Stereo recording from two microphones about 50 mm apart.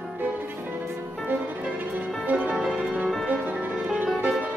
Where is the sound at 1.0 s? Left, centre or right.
Right.